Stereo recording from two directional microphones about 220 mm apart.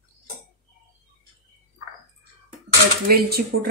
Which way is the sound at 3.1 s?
45° right (ahead or behind).